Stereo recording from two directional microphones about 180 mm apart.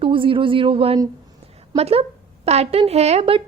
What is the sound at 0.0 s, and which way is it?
A woman's voice, 30° right (ahead or behind).